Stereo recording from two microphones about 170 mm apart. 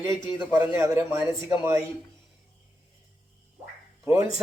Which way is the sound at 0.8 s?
15° right (ahead or behind).